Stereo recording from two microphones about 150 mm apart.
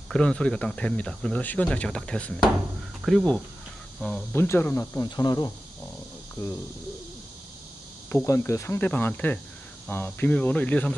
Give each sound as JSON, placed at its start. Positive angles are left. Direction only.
{"t": 0.1, "sound": "speech", "side_deg": 5}
{"t": 4.3, "sound": "speech", "side_deg": 15}
{"t": 8.1, "sound": "speech", "side_deg": 15}